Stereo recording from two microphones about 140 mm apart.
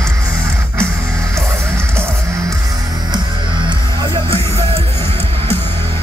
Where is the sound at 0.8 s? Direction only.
20° right (ahead or behind).